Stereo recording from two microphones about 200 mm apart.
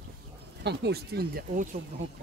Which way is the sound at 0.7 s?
55° right (ahead or behind).